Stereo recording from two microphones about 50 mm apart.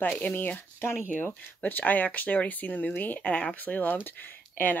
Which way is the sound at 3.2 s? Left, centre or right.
Left.